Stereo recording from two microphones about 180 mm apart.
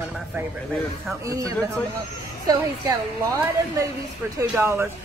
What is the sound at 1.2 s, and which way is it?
A woman's voice, 20° right (ahead or behind).